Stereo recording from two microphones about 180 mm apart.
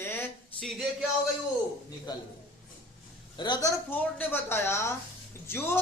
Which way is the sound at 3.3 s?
25° left (ahead or behind).